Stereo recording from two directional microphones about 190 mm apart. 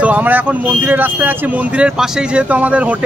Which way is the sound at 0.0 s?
10° right (ahead or behind).